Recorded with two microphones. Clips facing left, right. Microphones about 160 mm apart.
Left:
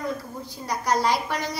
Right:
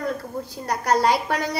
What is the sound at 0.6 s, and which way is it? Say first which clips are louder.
Speech: right 3 dB; 60° right (ahead or behind).